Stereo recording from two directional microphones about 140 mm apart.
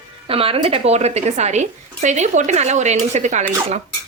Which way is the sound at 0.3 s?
40° right (ahead or behind).